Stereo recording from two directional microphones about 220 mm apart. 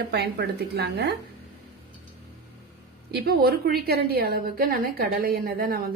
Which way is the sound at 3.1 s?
45° right (ahead or behind).